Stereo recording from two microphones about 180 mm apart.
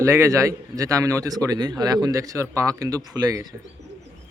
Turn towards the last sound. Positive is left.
turn(degrees=-20)  # may be behind; listen again after turning